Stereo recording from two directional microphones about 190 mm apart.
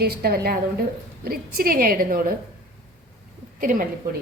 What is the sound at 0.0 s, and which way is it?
Speech, 55° right (ahead or behind).